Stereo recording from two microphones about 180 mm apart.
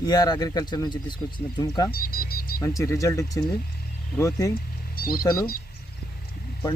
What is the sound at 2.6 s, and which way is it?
Speech, 20° left (ahead or behind).